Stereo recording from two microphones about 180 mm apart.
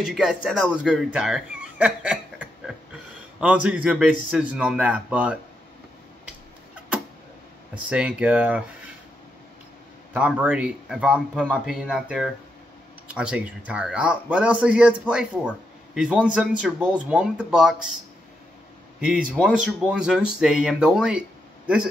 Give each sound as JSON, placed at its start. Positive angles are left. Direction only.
{"t": 0.0, "sound": "a man's voice", "side_deg": -5}
{"t": 7.9, "sound": "a man's voice", "side_deg": -5}
{"t": 10.1, "sound": "a man's voice", "side_deg": -10}
{"t": 11.1, "sound": "a man's voice", "side_deg": 5}
{"t": 19.3, "sound": "speech", "side_deg": 5}
{"t": 19.9, "sound": "speech", "side_deg": -5}